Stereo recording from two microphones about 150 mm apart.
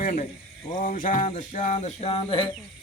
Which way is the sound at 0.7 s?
55° left (ahead or behind).